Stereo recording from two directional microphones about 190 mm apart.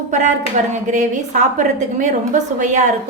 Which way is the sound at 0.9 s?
40° right (ahead or behind).